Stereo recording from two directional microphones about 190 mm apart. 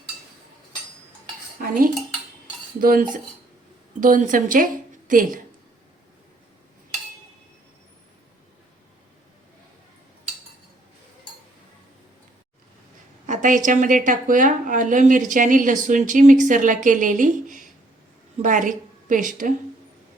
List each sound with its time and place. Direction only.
1.6 s cutlery: 45° right (ahead or behind)
2.8 s a woman's voice: 45° right (ahead or behind)
13.2 s a woman's voice: 40° right (ahead or behind)